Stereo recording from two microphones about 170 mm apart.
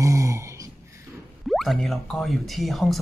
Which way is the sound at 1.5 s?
Centre (ahead or behind).